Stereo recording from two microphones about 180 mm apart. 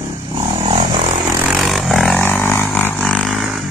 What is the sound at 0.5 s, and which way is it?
Vehicle, 30° right (ahead or behind).